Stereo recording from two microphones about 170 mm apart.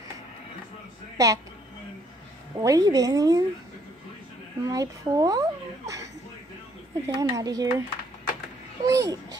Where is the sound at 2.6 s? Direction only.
20° right (ahead or behind).